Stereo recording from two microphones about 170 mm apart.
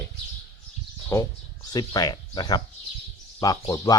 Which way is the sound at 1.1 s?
15° left (ahead or behind).